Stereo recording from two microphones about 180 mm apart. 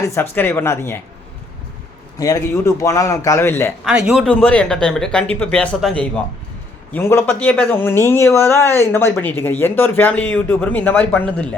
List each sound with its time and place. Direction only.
0.1 s speech: 10° left (ahead or behind)
2.1 s speech: 20° left (ahead or behind)
3.8 s speech: 5° right (ahead or behind)